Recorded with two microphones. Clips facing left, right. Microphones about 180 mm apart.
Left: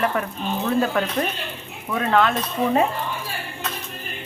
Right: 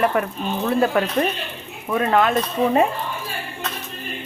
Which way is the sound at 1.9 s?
30° right (ahead or behind).